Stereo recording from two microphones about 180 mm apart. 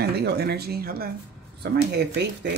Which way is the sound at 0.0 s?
65° right (ahead or behind).